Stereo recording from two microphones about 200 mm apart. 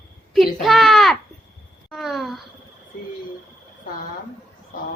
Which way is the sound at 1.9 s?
Centre (ahead or behind).